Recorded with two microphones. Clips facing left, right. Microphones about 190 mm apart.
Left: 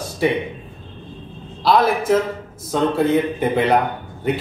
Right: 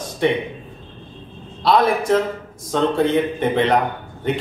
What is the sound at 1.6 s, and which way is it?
Speech, centre (ahead or behind).